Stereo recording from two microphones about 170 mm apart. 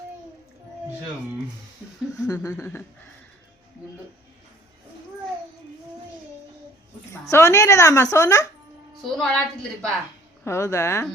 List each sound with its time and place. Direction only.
2.2 s a sound: 20° left (ahead or behind)
7.1 s a woman's voice: 15° left (ahead or behind)
9.0 s a woman's voice: centre (ahead or behind)
10.4 s a woman's voice: 15° left (ahead or behind)